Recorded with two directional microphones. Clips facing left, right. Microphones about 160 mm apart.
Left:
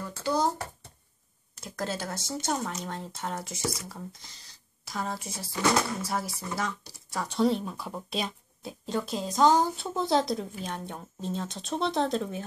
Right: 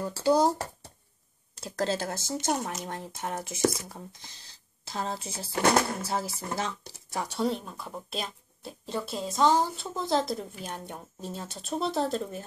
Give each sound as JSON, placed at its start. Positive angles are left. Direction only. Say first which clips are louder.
{"t": 0.0, "sound": "speech", "louder": "right 4 dB", "side_deg": -35}
{"t": 5.5, "sound": "speech", "louder": "right 2 dB", "side_deg": -55}
{"t": 6.0, "sound": "speech", "louder": "right 1 dB", "side_deg": -25}
{"t": 7.3, "sound": "speech", "louder": "left 5 dB", "side_deg": 0}